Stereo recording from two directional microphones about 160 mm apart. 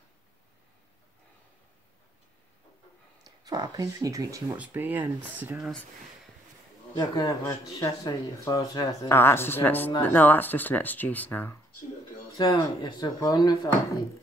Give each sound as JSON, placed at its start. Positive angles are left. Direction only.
{"t": 3.3, "sound": "speech", "side_deg": -25}
{"t": 5.6, "sound": "speech", "side_deg": 5}
{"t": 7.0, "sound": "speech", "side_deg": 25}
{"t": 12.4, "sound": "speech", "side_deg": 30}